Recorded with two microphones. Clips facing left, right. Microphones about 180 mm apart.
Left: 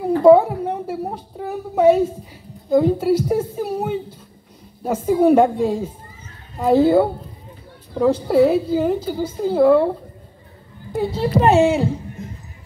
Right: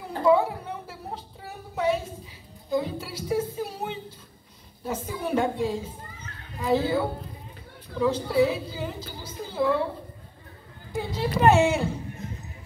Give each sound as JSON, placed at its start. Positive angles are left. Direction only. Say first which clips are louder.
{"t": 0.0, "sound": "a sound", "louder": "left 10 dB", "side_deg": 50}
{"t": 2.7, "sound": "a woman's voice", "louder": "left 13 dB", "side_deg": 50}
{"t": 11.1, "sound": "speech", "louder": "left 5 dB", "side_deg": 30}